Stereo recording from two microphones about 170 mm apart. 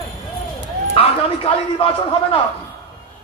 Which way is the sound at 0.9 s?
35° left (ahead or behind).